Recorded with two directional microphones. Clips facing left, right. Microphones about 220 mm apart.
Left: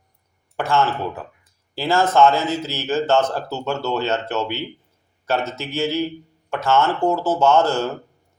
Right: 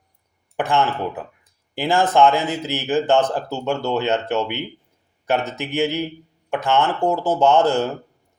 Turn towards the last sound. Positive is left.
turn(degrees=-15)  # may be behind; listen again after turning